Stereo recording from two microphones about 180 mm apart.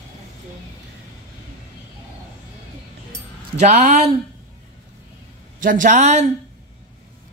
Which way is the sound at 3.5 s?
40° right (ahead or behind).